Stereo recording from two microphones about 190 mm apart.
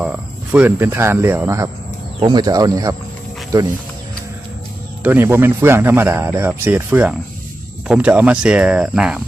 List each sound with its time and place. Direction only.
0.0 s speech: 5° right (ahead or behind)
5.0 s speech: 10° right (ahead or behind)